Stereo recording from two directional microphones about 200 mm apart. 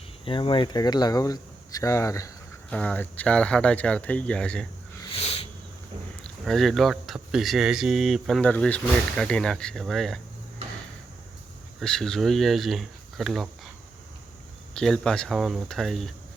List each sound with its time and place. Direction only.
0.3 s speech: 25° left (ahead or behind); by 4.6 s 5° left (ahead or behind)
5.1 s sniff: 30° left (ahead or behind)
6.2 s speech: centre (ahead or behind)
11.8 s speech: centre (ahead or behind)
14.7 s speech: 5° left (ahead or behind)